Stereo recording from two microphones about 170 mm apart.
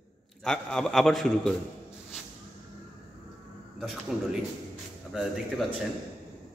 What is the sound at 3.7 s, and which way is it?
A man's voice, 5° right (ahead or behind).